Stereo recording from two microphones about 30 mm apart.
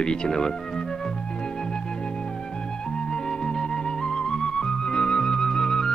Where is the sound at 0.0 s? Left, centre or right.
Left.